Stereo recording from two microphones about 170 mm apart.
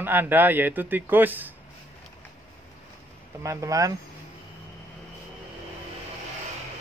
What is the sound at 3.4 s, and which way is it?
Speech, 20° right (ahead or behind).